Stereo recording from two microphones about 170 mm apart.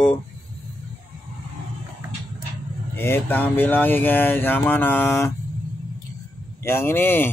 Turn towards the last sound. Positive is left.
turn(degrees=10)  # may be behind; listen again after turning